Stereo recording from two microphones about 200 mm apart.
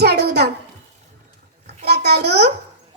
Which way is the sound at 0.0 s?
55° right (ahead or behind).